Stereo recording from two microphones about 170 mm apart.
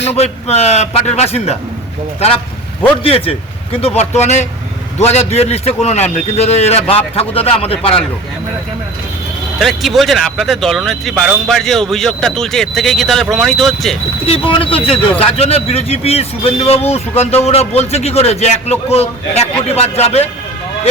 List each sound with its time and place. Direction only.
0.0 s speech: 40° left (ahead or behind)
9.6 s speech: centre (ahead or behind)
14.3 s speech: 30° left (ahead or behind)